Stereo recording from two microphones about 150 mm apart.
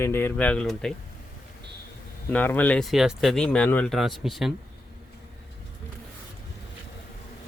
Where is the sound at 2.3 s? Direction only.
10° left (ahead or behind).